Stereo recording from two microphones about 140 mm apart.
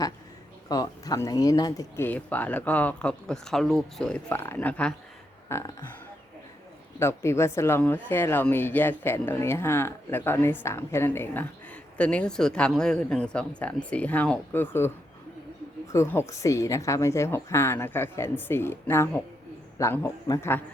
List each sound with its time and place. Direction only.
0.7 s speech: 25° left (ahead or behind)
2.0 s speech: 10° left (ahead or behind)
7.0 s speech: 20° left (ahead or behind)